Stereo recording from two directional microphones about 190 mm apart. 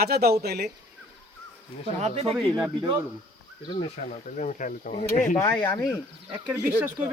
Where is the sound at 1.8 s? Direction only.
30° right (ahead or behind).